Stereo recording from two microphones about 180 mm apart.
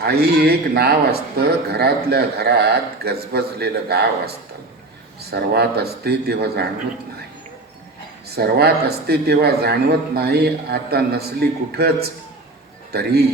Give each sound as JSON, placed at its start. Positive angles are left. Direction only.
{"t": 0.0, "sound": "speech", "side_deg": -60}
{"t": 5.3, "sound": "speech", "side_deg": -65}
{"t": 8.4, "sound": "speech", "side_deg": -60}